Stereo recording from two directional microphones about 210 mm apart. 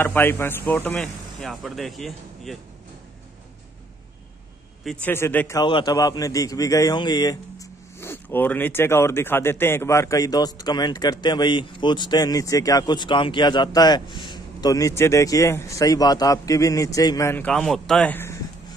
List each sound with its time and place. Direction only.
0.0 s a man's voice: 10° left (ahead or behind)
5.0 s a man's voice: 10° left (ahead or behind)
5.6 s a man's voice: 20° left (ahead or behind)